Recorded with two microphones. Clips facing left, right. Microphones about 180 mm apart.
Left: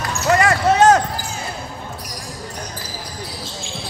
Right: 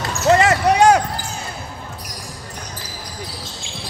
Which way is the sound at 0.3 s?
20° right (ahead or behind).